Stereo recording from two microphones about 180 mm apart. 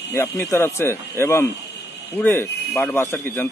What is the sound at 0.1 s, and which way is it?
Speech, 15° left (ahead or behind).